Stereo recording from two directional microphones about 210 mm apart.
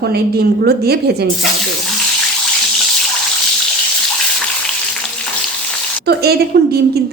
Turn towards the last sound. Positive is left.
turn(degrees=-50)  # may be behind; listen again after turning